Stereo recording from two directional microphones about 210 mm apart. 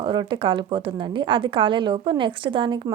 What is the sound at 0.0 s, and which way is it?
A woman's voice, 20° right (ahead or behind).